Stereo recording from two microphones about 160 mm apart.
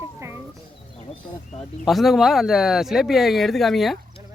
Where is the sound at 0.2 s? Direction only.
15° right (ahead or behind).